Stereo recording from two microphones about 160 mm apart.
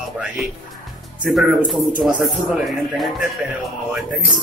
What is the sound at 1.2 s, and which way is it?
Speech, 5° right (ahead or behind).